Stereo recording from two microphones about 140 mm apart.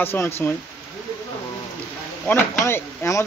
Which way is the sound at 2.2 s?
15° left (ahead or behind).